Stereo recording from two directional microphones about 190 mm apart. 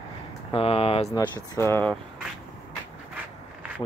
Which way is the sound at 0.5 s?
30° left (ahead or behind).